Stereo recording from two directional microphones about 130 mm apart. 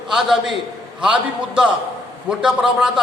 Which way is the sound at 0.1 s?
5° right (ahead or behind).